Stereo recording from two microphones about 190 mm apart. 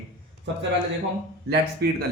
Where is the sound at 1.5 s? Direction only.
55° right (ahead or behind).